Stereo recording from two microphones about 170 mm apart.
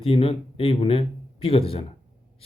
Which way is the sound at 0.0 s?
35° left (ahead or behind).